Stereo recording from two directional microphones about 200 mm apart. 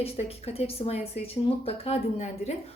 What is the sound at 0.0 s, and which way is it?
A woman's voice, 30° left (ahead or behind).